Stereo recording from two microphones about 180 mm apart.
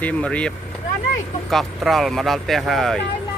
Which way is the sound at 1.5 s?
Centre (ahead or behind).